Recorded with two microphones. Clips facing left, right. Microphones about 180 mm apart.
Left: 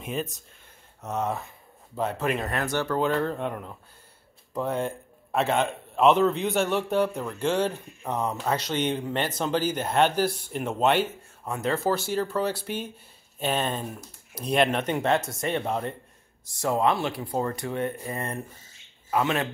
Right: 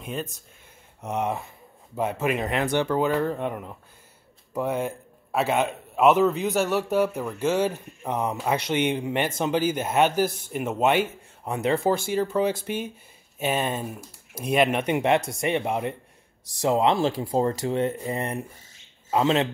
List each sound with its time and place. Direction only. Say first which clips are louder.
0.0 s speech: left 1 dB; centre (ahead or behind)
1.0 s a man's voice: right 2 dB; 15° right (ahead or behind)